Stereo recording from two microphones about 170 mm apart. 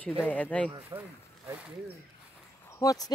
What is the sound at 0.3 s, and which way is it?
Speech, 10° left (ahead or behind).